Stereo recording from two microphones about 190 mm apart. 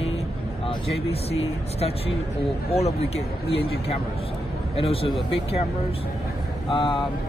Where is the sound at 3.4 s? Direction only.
30° left (ahead or behind).